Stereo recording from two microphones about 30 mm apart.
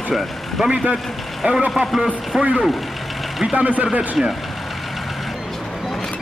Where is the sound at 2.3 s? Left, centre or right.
Right.